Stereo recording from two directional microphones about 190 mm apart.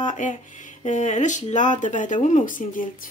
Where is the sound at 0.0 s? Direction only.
40° left (ahead or behind).